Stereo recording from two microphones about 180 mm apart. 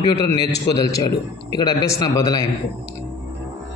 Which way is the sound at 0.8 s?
20° left (ahead or behind).